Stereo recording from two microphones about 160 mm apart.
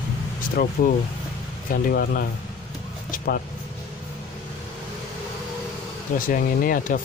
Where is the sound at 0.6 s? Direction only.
75° left (ahead or behind).